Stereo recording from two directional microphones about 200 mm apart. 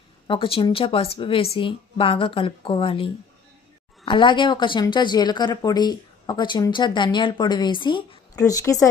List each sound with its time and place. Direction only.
0.3 s speech: 25° left (ahead or behind)